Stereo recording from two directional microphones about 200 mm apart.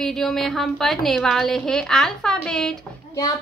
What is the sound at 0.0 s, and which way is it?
Speech, centre (ahead or behind).